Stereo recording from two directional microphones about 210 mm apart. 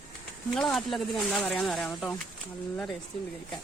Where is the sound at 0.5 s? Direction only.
Centre (ahead or behind).